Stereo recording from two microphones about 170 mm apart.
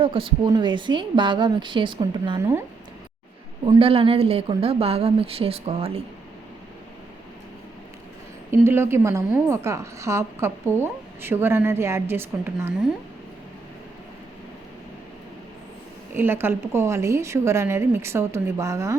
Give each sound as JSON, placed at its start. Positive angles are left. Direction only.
{"t": 0.0, "sound": "a woman's voice", "side_deg": -30}
{"t": 2.4, "sound": "a woman's voice", "side_deg": -15}
{"t": 3.8, "sound": "speech", "side_deg": -35}
{"t": 8.4, "sound": "a woman's voice", "side_deg": -15}
{"t": 16.1, "sound": "a woman's voice", "side_deg": -15}